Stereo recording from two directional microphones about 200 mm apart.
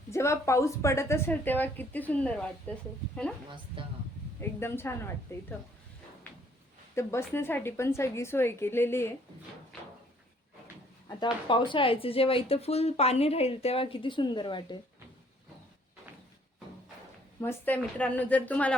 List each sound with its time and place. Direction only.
0.1 s a woman's voice: 15° left (ahead or behind)
4.4 s a woman's voice: 10° left (ahead or behind)
6.9 s a woman's voice: 15° left (ahead or behind)
11.2 s speech: 25° left (ahead or behind)
17.4 s a woman's voice: 5° left (ahead or behind)